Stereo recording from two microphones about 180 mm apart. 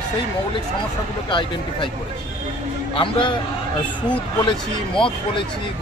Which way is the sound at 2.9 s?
30° left (ahead or behind).